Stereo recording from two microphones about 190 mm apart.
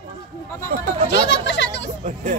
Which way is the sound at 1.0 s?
65° left (ahead or behind).